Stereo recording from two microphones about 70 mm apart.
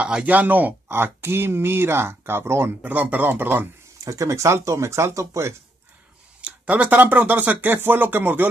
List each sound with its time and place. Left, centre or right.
0.0 s speech: centre
0.8 s speech: right
2.8 s speech: right
4.0 s speech: right
6.4 s speech: centre